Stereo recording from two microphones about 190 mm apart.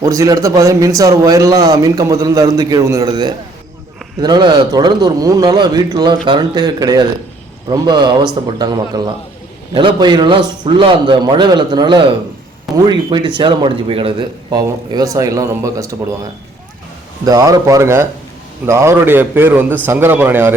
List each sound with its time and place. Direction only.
0.0 s speech: 15° right (ahead or behind)
17.2 s a man's voice: 20° right (ahead or behind)